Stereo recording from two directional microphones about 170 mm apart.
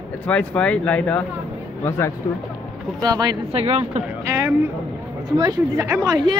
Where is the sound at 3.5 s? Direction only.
35° right (ahead or behind).